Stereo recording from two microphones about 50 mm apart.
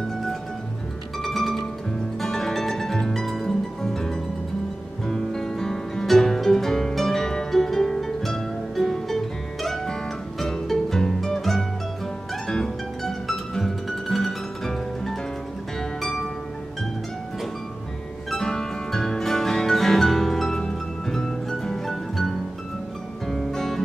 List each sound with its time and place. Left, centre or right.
1.2 s music: centre
18.3 s music: centre